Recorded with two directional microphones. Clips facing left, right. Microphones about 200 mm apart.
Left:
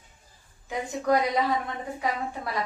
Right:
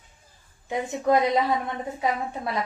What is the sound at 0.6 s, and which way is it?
A woman's voice, 25° right (ahead or behind).